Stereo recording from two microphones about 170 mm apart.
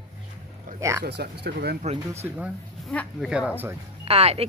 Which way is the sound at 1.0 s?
75° right (ahead or behind).